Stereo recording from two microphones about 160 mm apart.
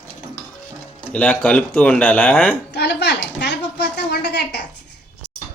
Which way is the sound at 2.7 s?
90° left.